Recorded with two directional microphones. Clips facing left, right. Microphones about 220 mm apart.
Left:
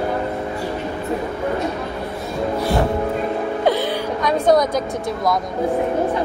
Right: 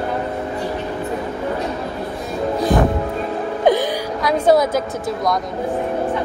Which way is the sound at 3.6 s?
15° right (ahead or behind).